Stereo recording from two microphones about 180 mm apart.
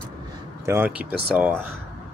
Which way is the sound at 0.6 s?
10° right (ahead or behind).